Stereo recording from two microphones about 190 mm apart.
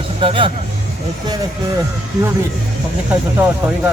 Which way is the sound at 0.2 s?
25° right (ahead or behind).